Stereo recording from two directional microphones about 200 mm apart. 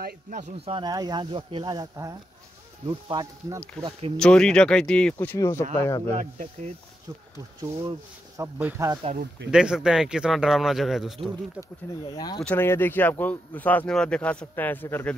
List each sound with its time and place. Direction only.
0.0 s speech: 40° right (ahead or behind); by 3.6 s 20° right (ahead or behind)
4.2 s speech: 5° left (ahead or behind)
6.1 s speech: 35° right (ahead or behind)
7.1 s speech: 20° right (ahead or behind)
8.4 s speech: 10° right (ahead or behind)
9.5 s speech: 5° right (ahead or behind)
12.1 s speech: 20° left (ahead or behind)